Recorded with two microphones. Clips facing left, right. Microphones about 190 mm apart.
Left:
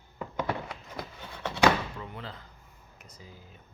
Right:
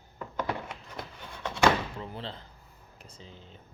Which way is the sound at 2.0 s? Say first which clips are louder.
Right 2 dB; 30° right (ahead or behind).